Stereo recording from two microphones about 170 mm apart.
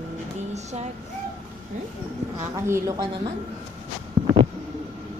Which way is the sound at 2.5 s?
20° right (ahead or behind).